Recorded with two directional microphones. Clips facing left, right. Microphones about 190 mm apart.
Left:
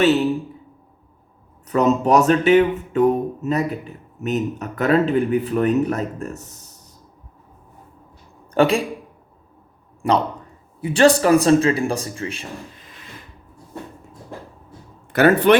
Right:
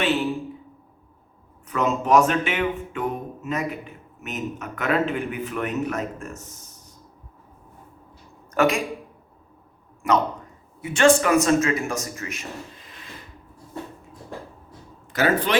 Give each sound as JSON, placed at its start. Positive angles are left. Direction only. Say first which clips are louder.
{"t": 0.0, "sound": "speech", "louder": "left 7 dB", "side_deg": 40}
{"t": 1.6, "sound": "speech", "louder": "left 6 dB", "side_deg": 40}
{"t": 8.5, "sound": "a man's voice", "louder": "left 4 dB", "side_deg": 30}
{"t": 10.0, "sound": "speech", "louder": "left 2 dB", "side_deg": 30}
{"t": 15.1, "sound": "a man's voice", "louder": "left 8 dB", "side_deg": 60}